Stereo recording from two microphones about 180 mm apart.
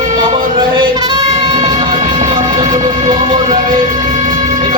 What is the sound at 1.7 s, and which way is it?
Train, 25° right (ahead or behind).